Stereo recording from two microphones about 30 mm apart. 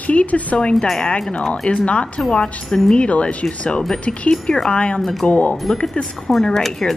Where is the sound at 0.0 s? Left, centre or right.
Left.